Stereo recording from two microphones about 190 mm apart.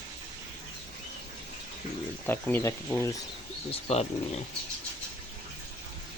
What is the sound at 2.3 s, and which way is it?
Speech, 10° left (ahead or behind).